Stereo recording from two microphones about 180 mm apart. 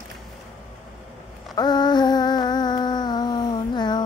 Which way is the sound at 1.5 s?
25° left (ahead or behind).